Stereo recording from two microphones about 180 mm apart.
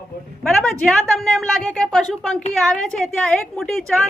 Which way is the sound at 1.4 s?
Centre (ahead or behind).